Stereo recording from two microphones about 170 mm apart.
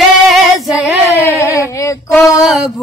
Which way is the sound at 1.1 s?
15° left (ahead or behind).